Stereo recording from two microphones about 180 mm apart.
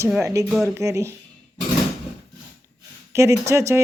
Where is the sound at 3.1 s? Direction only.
15° right (ahead or behind).